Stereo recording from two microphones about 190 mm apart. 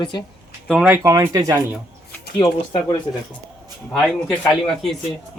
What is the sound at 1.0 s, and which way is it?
Speech, 15° right (ahead or behind).